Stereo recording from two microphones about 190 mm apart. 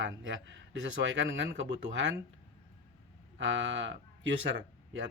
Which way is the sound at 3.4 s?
75° right (ahead or behind).